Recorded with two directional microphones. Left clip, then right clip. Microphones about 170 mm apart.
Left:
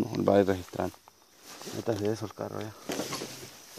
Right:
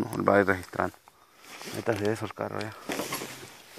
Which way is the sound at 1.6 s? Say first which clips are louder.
Right 2 dB; 25° right (ahead or behind).